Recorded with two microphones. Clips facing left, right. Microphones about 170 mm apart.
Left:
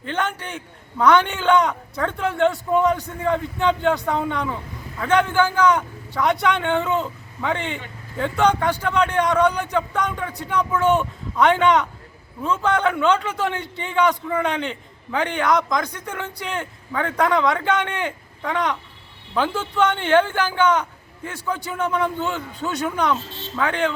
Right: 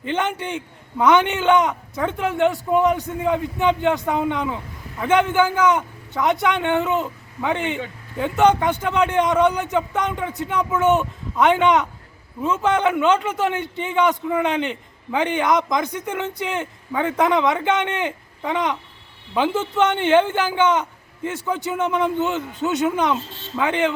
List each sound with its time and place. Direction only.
0.0 s a man's voice: 15° right (ahead or behind)